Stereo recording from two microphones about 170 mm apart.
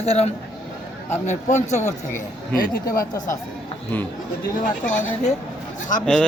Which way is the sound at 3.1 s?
20° left (ahead or behind).